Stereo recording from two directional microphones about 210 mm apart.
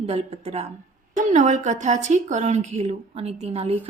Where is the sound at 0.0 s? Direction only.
30° right (ahead or behind).